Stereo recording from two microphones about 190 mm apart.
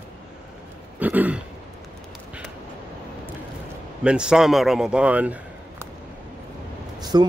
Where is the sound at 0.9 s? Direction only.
10° right (ahead or behind).